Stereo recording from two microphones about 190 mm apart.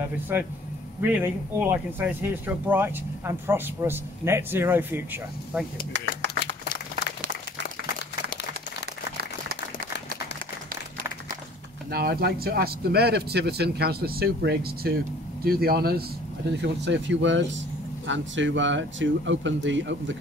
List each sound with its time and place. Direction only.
0.0 s speech: 10° right (ahead or behind)
11.9 s speech: 55° right (ahead or behind)
16.6 s speech: 70° right (ahead or behind)